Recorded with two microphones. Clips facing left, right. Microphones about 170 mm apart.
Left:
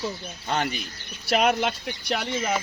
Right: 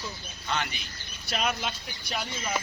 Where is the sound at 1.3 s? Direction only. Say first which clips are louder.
Left 9 dB; 65° left (ahead or behind).